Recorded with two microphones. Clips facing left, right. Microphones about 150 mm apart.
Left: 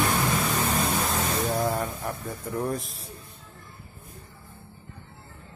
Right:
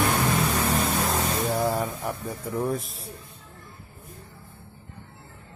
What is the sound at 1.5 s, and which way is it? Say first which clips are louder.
Music: right 1 dB; 5° right (ahead or behind).